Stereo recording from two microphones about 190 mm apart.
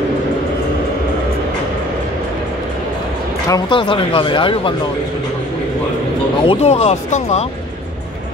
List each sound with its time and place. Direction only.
3.4 s speech: 20° left (ahead or behind)
6.4 s speech: 30° left (ahead or behind)